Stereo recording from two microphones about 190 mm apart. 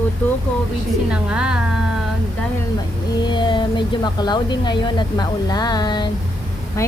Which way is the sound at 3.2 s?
25° left (ahead or behind).